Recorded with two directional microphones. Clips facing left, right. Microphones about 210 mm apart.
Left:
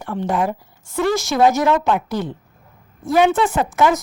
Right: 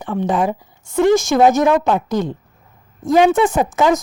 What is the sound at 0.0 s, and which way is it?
A woman's voice, 15° right (ahead or behind).